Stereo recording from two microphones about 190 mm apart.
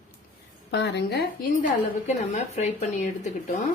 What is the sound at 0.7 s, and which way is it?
Speech, 65° left (ahead or behind).